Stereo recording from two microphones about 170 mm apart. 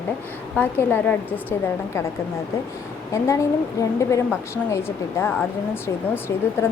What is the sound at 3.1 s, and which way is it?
A woman's voice, 20° left (ahead or behind).